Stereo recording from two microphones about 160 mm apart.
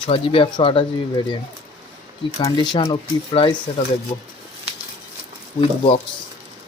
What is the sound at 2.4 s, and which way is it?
Speech, 25° left (ahead or behind).